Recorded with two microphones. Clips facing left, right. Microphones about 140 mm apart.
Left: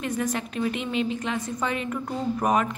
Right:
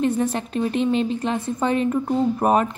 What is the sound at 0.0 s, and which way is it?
A woman's voice, 30° right (ahead or behind).